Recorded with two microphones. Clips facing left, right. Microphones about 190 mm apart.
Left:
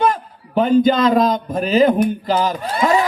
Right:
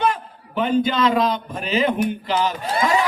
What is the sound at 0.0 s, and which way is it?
A man's voice, 40° left (ahead or behind).